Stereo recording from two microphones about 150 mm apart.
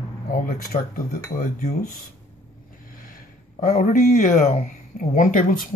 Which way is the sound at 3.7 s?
55° left (ahead or behind).